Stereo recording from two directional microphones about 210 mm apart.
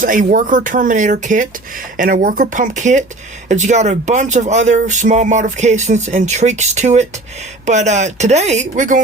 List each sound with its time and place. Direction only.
0.0 s speech: 40° right (ahead or behind)